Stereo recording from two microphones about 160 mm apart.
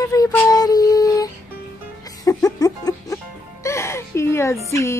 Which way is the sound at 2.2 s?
20° left (ahead or behind).